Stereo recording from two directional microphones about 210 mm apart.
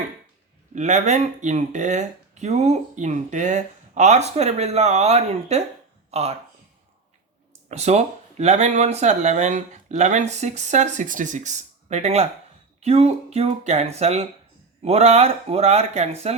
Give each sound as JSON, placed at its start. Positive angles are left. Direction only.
{"t": 0.8, "sound": "speech", "side_deg": -35}
{"t": 7.7, "sound": "speech", "side_deg": -30}